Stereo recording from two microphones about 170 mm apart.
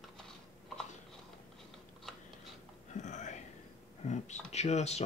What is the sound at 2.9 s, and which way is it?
Whispering, 45° left (ahead or behind).